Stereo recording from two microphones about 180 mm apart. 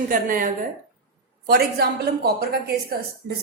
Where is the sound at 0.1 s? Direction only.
50° right (ahead or behind).